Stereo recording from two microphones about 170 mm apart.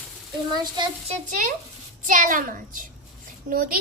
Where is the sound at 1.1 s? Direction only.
50° right (ahead or behind).